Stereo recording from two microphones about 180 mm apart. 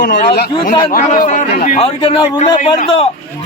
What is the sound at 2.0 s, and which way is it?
A man's voice, 30° left (ahead or behind).